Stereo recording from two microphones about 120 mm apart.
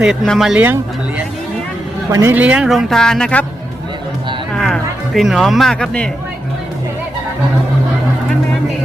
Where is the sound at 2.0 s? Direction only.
25° right (ahead or behind).